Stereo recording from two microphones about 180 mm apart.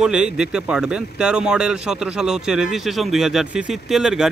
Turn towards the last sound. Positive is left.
turn(degrees=-5)  # may be behind; listen again after turning